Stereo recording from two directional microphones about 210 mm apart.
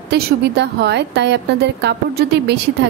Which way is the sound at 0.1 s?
50° right (ahead or behind).